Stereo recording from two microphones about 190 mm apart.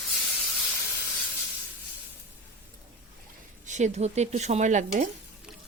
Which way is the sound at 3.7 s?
40° right (ahead or behind).